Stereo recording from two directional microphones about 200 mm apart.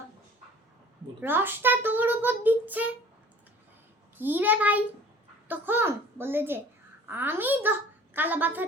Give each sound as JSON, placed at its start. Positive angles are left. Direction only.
{"t": 1.2, "sound": "a child's voice", "side_deg": -10}
{"t": 4.2, "sound": "a child's voice", "side_deg": -10}